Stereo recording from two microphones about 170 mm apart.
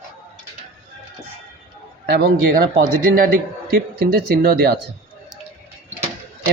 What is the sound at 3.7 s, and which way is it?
Speech, 60° right (ahead or behind).